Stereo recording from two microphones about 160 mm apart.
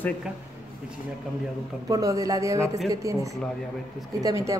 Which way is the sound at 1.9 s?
20° right (ahead or behind).